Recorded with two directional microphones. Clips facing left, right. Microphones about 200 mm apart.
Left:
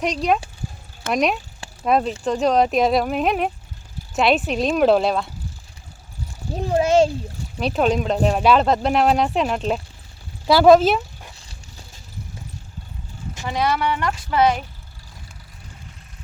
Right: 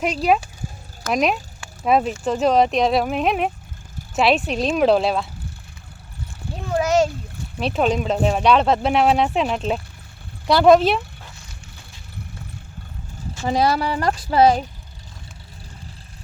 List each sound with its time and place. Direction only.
0.0 s speech: 5° right (ahead or behind)
6.6 s a sound: 30° left (ahead or behind)
7.6 s speech: centre (ahead or behind)
13.4 s speech: 35° right (ahead or behind)